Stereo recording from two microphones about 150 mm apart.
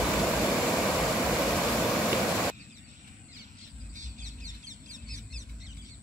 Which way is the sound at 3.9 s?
55° right (ahead or behind).